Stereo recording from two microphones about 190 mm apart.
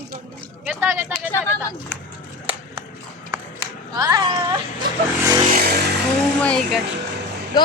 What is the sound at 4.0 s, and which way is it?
Speech, 20° right (ahead or behind).